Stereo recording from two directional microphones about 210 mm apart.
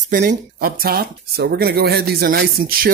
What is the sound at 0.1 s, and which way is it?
Speech, 45° right (ahead or behind).